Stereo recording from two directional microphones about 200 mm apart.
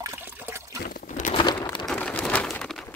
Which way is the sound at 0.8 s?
45° left (ahead or behind).